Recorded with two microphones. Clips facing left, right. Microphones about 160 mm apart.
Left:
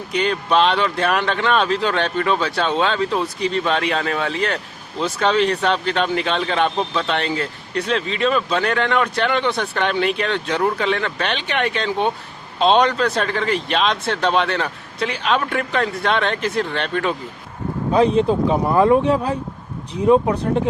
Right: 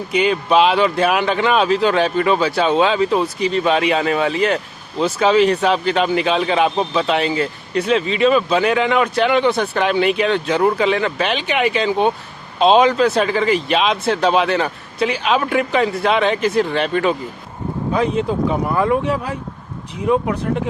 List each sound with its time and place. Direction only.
0.1 s speech: 5° right (ahead or behind)
17.9 s speech: 30° left (ahead or behind)